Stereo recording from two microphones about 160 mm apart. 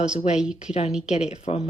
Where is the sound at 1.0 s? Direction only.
45° left (ahead or behind).